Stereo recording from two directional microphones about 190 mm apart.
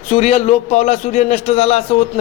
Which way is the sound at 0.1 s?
35° left (ahead or behind).